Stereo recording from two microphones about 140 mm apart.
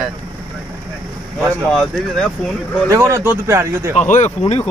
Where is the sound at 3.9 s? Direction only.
55° left (ahead or behind).